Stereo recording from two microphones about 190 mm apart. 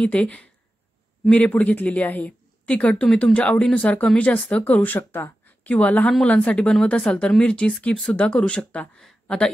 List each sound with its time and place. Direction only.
0.0 s a woman's voice: 5° left (ahead or behind)